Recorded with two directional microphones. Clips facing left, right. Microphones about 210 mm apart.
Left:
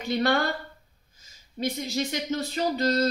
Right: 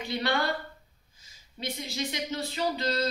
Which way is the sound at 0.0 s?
45° left (ahead or behind).